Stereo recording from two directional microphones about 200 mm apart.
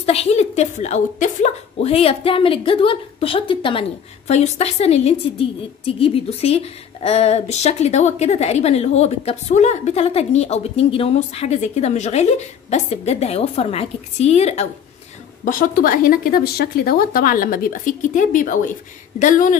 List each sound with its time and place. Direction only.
0.0 s a woman's voice: 30° left (ahead or behind)
15.4 s a woman's voice: 45° left (ahead or behind)